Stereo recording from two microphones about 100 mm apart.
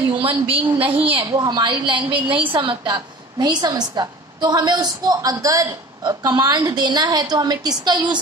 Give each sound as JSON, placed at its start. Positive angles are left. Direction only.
{"t": 0.2, "sound": "a woman's voice", "side_deg": -65}
{"t": 1.3, "sound": "a woman's voice", "side_deg": -45}